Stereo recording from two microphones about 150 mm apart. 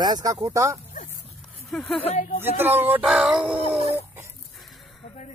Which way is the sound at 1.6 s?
5° left (ahead or behind).